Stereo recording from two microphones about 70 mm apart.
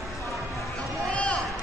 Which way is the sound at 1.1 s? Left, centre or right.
Centre.